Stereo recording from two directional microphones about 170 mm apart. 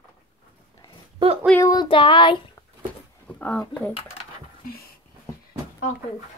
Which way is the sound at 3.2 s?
10° left (ahead or behind).